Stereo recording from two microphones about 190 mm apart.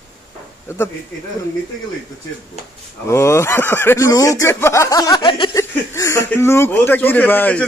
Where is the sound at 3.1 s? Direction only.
15° left (ahead or behind).